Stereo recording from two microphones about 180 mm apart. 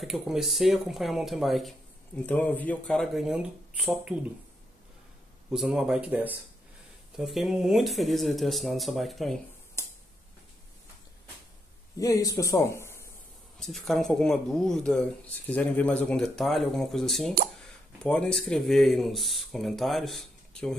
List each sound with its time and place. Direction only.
0.0 s speech: centre (ahead or behind)
5.5 s speech: 5° right (ahead or behind)
9.8 s a sound: 15° left (ahead or behind)
12.0 s speech: 20° left (ahead or behind)
13.6 s speech: centre (ahead or behind)